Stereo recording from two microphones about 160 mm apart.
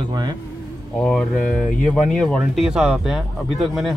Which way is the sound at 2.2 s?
Centre (ahead or behind).